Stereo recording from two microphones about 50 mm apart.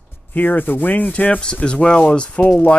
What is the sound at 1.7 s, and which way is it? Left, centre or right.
Speech, centre.